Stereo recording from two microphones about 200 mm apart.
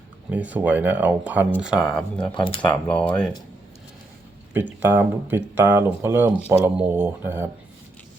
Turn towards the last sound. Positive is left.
turn(degrees=-10)  # may be behind; listen again after turning